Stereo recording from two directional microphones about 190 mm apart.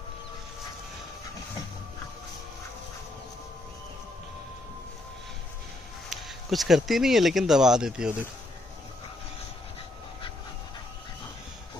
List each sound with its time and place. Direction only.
6.0 s speech: centre (ahead or behind)